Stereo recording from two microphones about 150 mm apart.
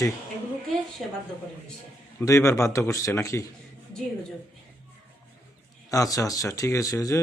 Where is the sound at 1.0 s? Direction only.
Centre (ahead or behind).